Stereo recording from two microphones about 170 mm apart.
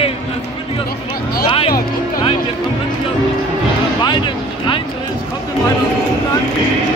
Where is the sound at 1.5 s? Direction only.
30° left (ahead or behind).